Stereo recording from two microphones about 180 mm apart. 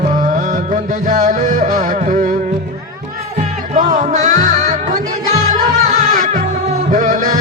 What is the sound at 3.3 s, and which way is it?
Music, 40° right (ahead or behind).